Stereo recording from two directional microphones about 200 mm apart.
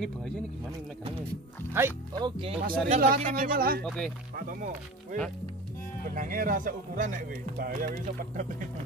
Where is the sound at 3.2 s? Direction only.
45° right (ahead or behind).